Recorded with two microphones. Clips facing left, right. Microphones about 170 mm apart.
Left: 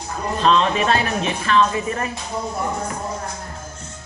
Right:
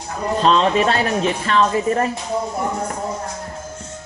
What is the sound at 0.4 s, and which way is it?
Speech, 30° right (ahead or behind).